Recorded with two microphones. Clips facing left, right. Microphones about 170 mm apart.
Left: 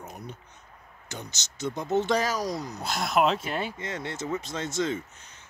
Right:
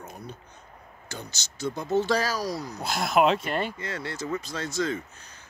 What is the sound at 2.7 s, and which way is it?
Speech, centre (ahead or behind).